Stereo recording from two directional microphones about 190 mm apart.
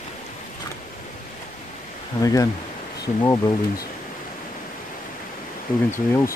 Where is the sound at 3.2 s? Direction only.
20° left (ahead or behind).